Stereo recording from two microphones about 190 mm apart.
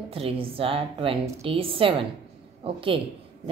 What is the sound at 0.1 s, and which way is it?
Speech, 30° right (ahead or behind).